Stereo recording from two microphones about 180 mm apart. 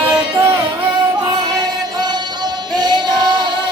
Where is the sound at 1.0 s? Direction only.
25° right (ahead or behind).